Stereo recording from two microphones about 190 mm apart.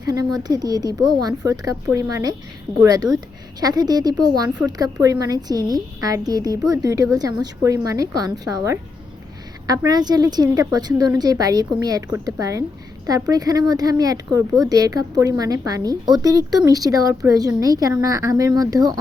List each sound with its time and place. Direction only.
0.0 s speech: 20° right (ahead or behind)
4.4 s speech: 5° right (ahead or behind)
4.8 s speech: 15° right (ahead or behind)